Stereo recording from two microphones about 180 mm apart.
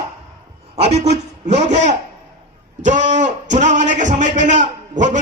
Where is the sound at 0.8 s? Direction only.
35° right (ahead or behind).